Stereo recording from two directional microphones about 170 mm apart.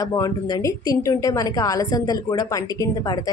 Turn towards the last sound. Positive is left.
turn(degrees=20)  # may be behind; listen again after turning